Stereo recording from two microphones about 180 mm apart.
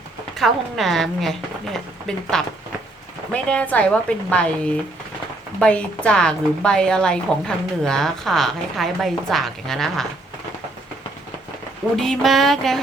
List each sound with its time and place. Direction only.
0.3 s a woman's voice: centre (ahead or behind)
11.9 s a woman's voice: centre (ahead or behind)